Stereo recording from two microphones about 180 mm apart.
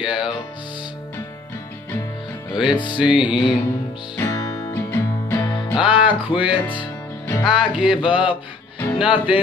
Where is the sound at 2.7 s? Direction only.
25° left (ahead or behind).